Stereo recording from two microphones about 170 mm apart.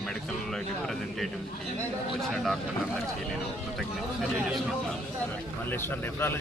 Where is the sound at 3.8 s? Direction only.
Centre (ahead or behind).